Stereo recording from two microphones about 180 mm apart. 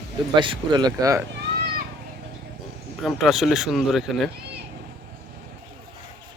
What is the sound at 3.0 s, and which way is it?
Speech, centre (ahead or behind).